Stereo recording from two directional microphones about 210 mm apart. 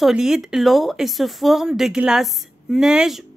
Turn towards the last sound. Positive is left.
turn(degrees=0)  # may be behind; listen again after turning